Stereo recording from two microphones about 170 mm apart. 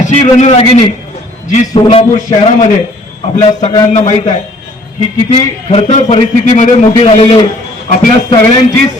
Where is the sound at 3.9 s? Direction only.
45° left (ahead or behind).